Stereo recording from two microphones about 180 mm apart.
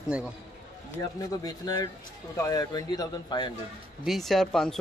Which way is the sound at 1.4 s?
20° left (ahead or behind).